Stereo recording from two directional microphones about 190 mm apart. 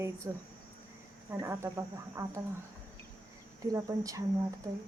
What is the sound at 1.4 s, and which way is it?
A woman's voice, 15° right (ahead or behind).